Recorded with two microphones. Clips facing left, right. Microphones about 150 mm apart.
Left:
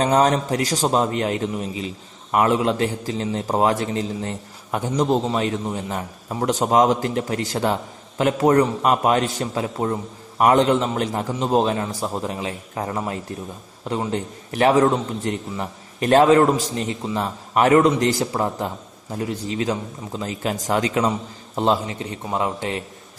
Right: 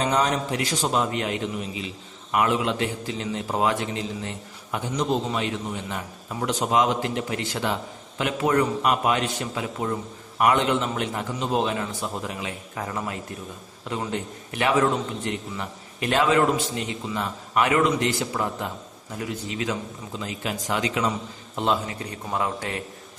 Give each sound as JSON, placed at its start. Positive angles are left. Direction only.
{"t": 0.0, "sound": "a man's voice", "side_deg": 40}
{"t": 21.5, "sound": "a man's voice", "side_deg": 30}